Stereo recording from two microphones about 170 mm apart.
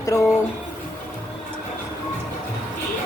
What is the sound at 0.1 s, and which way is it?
Speech, 20° left (ahead or behind).